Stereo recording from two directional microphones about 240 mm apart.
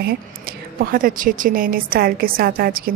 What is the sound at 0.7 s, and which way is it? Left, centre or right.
A woman's voice, right.